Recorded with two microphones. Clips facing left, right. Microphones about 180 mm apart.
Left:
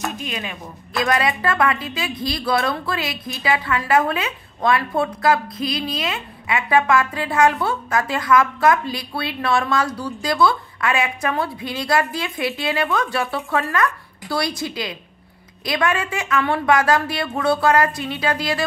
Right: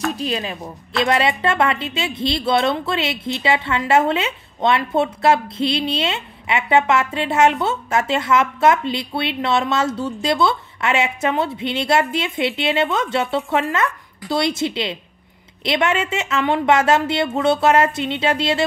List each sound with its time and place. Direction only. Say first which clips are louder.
0.1 s a woman's voice: right 5 dB; 35° right (ahead or behind)